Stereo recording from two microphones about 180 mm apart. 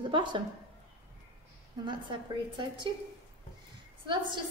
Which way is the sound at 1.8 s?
25° right (ahead or behind).